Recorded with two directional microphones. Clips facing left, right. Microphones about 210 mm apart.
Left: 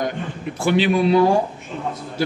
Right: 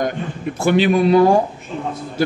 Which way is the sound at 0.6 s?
50° right (ahead or behind).